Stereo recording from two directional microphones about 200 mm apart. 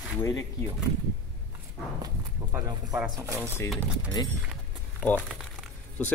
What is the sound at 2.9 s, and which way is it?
Speech, 10° right (ahead or behind).